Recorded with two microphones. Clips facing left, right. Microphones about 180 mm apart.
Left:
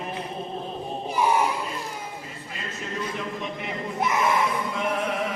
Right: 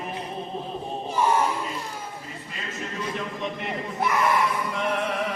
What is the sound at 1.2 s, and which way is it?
Battle cry, 10° left (ahead or behind).